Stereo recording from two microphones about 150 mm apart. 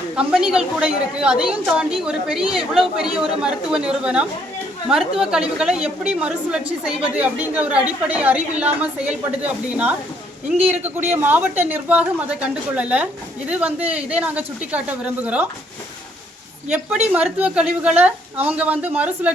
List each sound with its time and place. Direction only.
0.2 s a woman's voice: 5° right (ahead or behind)
16.6 s a woman's voice: 10° right (ahead or behind)